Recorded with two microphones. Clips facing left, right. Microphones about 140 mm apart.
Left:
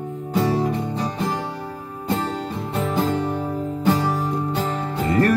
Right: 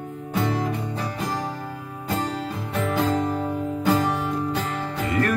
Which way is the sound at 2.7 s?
30° left (ahead or behind).